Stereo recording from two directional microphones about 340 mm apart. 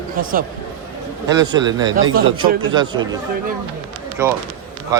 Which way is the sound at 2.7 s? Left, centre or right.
Centre.